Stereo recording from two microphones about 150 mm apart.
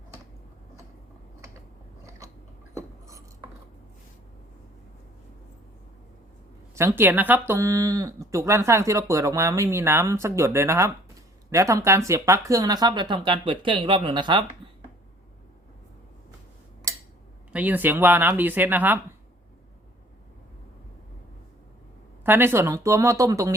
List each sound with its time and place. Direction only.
2.0 s biting: 20° right (ahead or behind)
2.7 s a sound: 20° right (ahead or behind)
6.7 s speech: 15° right (ahead or behind); by 14.4 s 30° right (ahead or behind)
16.9 s scissors: 20° right (ahead or behind)
17.5 s speech: 10° right (ahead or behind)
22.2 s speech: 15° right (ahead or behind)